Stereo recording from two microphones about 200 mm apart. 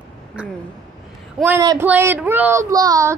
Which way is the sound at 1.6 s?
20° right (ahead or behind).